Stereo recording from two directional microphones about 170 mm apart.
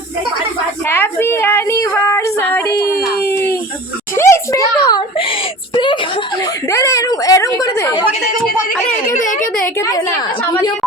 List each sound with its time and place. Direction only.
0.9 s speech: 15° left (ahead or behind)
3.2 s a sound: 10° left (ahead or behind)
4.1 s a child's voice: 15° left (ahead or behind)
9.1 s a woman's voice: 50° left (ahead or behind)
9.7 s a woman's voice: 20° left (ahead or behind)